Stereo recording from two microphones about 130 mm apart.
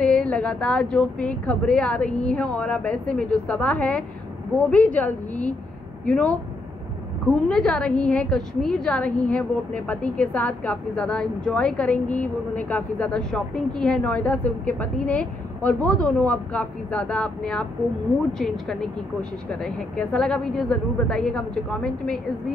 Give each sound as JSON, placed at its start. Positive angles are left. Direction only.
{"t": 0.0, "sound": "a woman's voice", "side_deg": 5}
{"t": 7.2, "sound": "a woman's voice", "side_deg": 5}